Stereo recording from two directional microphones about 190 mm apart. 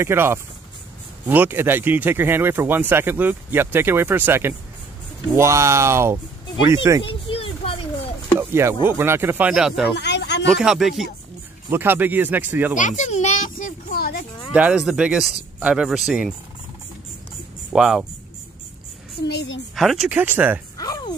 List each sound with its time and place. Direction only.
0.0 s speech: 10° right (ahead or behind)
7.0 s a sound: 30° left (ahead or behind)
8.4 s a sound: 15° right (ahead or behind)
8.8 s speech: 10° right (ahead or behind)
9.9 s a sound: 65° left (ahead or behind)
10.4 s speech: centre (ahead or behind)
12.7 s a child's voice: 40° left (ahead or behind)
14.5 s speech: 5° right (ahead or behind)
17.7 s speech: centre (ahead or behind)
19.2 s a woman's voice: 70° left (ahead or behind)
19.7 s speech: centre (ahead or behind)
20.7 s a sound: 20° left (ahead or behind)